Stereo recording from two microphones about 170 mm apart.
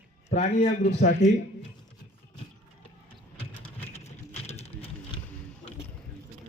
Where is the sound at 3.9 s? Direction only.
40° left (ahead or behind).